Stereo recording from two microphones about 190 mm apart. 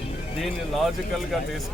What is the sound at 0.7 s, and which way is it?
Speech, centre (ahead or behind).